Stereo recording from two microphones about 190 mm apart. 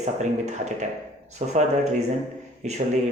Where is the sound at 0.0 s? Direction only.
40° right (ahead or behind).